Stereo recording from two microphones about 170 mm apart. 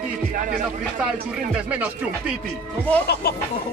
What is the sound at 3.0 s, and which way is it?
Speech, 70° left (ahead or behind).